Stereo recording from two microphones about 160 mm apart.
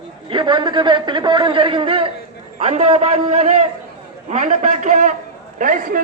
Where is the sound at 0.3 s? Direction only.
30° right (ahead or behind).